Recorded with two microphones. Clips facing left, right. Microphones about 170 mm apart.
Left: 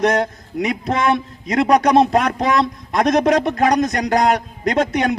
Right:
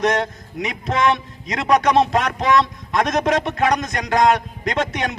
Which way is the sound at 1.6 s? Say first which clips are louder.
Left 2 dB; 35° left (ahead or behind).